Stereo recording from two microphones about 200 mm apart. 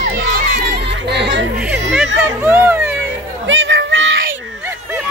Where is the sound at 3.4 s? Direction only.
70° right (ahead or behind).